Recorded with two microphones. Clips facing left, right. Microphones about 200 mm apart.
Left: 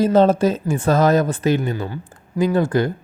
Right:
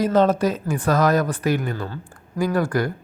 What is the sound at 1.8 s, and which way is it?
Speech, 15° left (ahead or behind).